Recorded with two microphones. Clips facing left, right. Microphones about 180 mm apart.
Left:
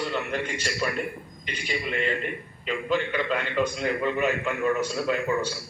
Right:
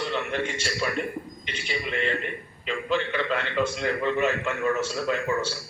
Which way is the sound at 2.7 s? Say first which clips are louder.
Even; 10° left (ahead or behind).